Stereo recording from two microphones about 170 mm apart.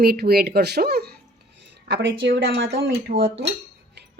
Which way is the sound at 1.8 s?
80° right.